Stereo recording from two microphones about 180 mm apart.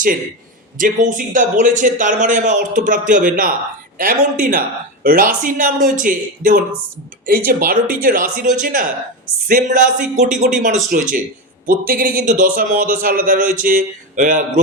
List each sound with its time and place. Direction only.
0.8 s a man's voice: 45° right (ahead or behind)